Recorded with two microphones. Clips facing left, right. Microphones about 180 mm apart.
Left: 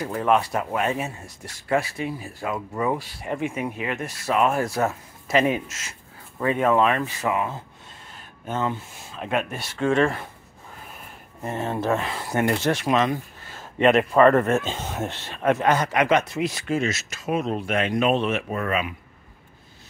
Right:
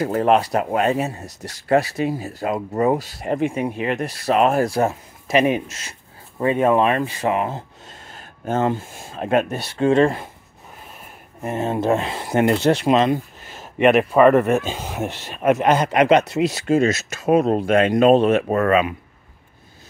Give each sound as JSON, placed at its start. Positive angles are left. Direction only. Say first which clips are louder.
{"t": 0.0, "sound": "speech", "louder": "right 5 dB", "side_deg": -40}
{"t": 5.3, "sound": "speech", "louder": "right 3 dB", "side_deg": -15}
{"t": 5.7, "sound": "speech", "louder": "right 2 dB", "side_deg": -35}
{"t": 8.5, "sound": "speech", "louder": "right 6 dB", "side_deg": -45}
{"t": 11.4, "sound": "speech", "louder": "right 5 dB", "side_deg": -20}
{"t": 17.1, "sound": "speech", "louder": "right 9 dB", "side_deg": -55}
{"t": 17.4, "sound": "speech", "louder": "right 7 dB", "side_deg": -40}